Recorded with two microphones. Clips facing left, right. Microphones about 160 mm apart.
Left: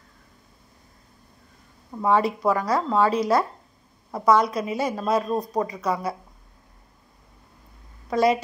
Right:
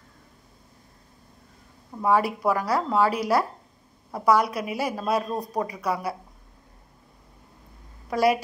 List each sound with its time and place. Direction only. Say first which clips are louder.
2.0 s speech: left 1 dB; 10° right (ahead or behind)
5.3 s speech: left 4 dB; 15° left (ahead or behind)
5.6 s speech: left 2 dB; 10° right (ahead or behind)
8.1 s a woman's voice: left 1 dB; 10° right (ahead or behind)